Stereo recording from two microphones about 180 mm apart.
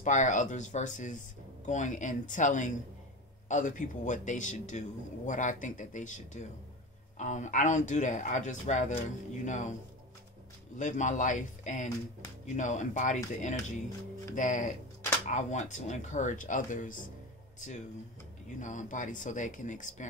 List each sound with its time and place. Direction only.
0.0 s a man's voice: 45° left (ahead or behind)
10.8 s a man's voice: 45° left (ahead or behind)